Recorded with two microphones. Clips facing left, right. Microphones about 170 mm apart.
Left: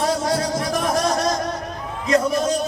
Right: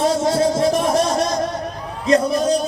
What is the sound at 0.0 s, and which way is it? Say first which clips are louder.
Music: right 4 dB; 25° right (ahead or behind).